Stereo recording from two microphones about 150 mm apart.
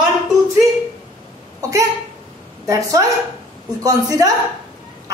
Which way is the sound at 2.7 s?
20° right (ahead or behind).